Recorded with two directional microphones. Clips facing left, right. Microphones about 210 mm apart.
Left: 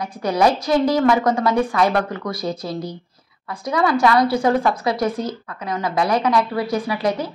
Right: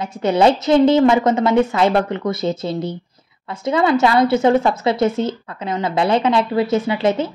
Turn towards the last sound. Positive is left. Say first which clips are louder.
# right 4 dB
turn(degrees=-25)  # may be behind; listen again after turning